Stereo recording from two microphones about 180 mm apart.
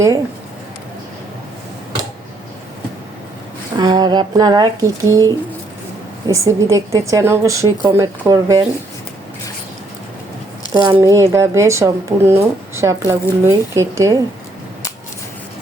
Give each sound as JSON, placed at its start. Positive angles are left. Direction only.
{"t": 3.8, "sound": "a woman's voice", "side_deg": -25}
{"t": 10.8, "sound": "a woman's voice", "side_deg": -25}